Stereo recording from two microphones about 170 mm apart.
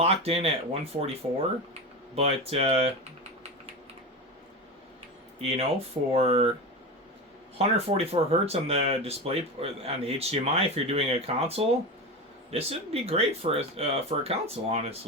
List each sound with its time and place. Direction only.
0.0 s speech: 35° right (ahead or behind)
2.1 s speech: 35° right (ahead or behind)
5.4 s speech: 35° right (ahead or behind)
7.6 s speech: 35° right (ahead or behind)